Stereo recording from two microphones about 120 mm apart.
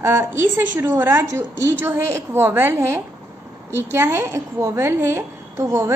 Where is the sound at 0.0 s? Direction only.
20° right (ahead or behind).